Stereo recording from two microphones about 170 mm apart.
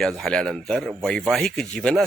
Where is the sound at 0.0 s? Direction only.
Centre (ahead or behind).